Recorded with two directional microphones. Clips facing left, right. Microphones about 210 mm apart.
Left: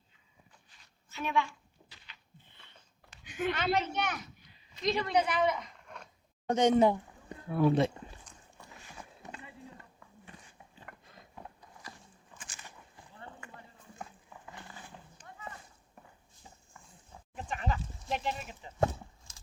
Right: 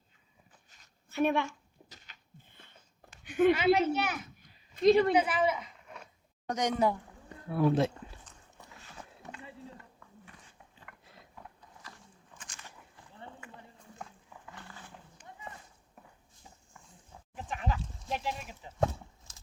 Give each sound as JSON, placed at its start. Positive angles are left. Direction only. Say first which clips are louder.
{"t": 0.7, "sound": "a sound", "louder": "right 10 dB", "side_deg": -50}
{"t": 3.5, "sound": "a woman's voice", "louder": "right 6 dB", "side_deg": -10}
{"t": 4.9, "sound": "a woman's voice", "louder": "right 10 dB", "side_deg": -55}
{"t": 5.1, "sound": "speech", "louder": "right 1 dB", "side_deg": -5}
{"t": 6.5, "sound": "speech", "louder": "left 5 dB", "side_deg": 25}
{"t": 7.5, "sound": "speech", "louder": "even", "side_deg": 0}
{"t": 10.9, "sound": "a sound", "louder": "left 5 dB", "side_deg": 35}
{"t": 12.4, "sound": "a sound", "louder": "even", "side_deg": 10}
{"t": 13.4, "sound": "run", "louder": "even", "side_deg": -5}
{"t": 14.0, "sound": "horse", "louder": "left 1 dB", "side_deg": 10}
{"t": 17.3, "sound": "bleat", "louder": "even", "side_deg": 0}